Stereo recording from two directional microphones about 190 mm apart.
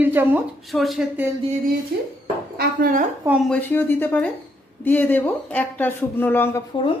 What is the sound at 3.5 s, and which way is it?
Speech, 10° left (ahead or behind).